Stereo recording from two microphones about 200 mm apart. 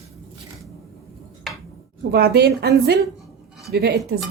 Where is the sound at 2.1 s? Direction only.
55° right (ahead or behind).